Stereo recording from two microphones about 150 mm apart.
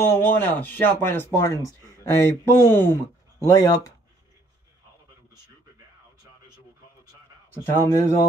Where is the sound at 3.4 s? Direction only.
25° left (ahead or behind).